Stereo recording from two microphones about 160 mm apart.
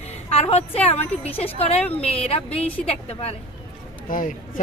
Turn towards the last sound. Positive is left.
turn(degrees=55)  # may be behind; listen again after turning